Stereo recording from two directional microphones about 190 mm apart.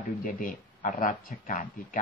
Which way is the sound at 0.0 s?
45° left (ahead or behind).